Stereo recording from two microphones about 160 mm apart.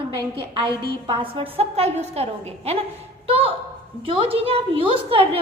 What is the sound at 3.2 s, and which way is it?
A woman's voice, 35° right (ahead or behind).